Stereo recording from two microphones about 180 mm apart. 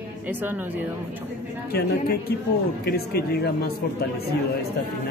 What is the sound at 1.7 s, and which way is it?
Speech, 60° left (ahead or behind).